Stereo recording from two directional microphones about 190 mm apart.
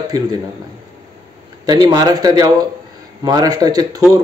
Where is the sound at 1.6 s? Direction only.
20° right (ahead or behind).